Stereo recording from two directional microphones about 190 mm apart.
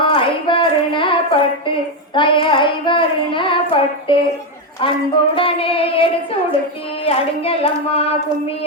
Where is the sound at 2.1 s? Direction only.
25° left (ahead or behind).